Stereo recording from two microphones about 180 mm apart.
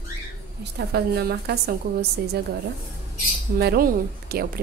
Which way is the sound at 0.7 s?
65° right (ahead or behind).